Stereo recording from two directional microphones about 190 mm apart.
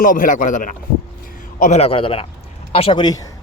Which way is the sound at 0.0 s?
45° left (ahead or behind).